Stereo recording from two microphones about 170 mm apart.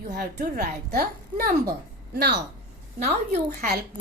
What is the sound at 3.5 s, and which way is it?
Speech, 60° right (ahead or behind).